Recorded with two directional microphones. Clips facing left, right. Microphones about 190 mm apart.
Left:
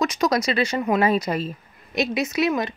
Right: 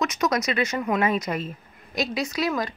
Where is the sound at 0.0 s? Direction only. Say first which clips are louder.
Left 3 dB; 30° left (ahead or behind).